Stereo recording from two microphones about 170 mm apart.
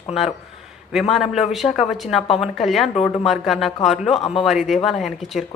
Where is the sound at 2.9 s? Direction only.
35° left (ahead or behind).